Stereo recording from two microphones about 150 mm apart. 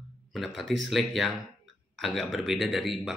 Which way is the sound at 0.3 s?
Centre (ahead or behind).